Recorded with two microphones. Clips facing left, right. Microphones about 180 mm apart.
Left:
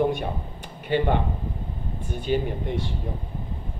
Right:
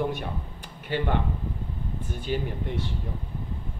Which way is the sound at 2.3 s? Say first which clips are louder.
Left 5 dB; 20° left (ahead or behind).